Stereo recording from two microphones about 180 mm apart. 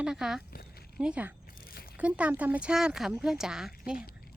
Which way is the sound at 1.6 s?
55° left (ahead or behind).